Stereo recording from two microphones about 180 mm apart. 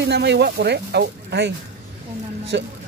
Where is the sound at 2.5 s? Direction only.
70° right (ahead or behind).